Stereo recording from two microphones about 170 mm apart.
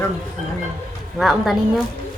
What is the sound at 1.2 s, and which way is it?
Speech, centre (ahead or behind).